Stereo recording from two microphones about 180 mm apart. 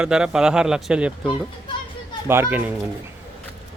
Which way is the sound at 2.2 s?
15° right (ahead or behind).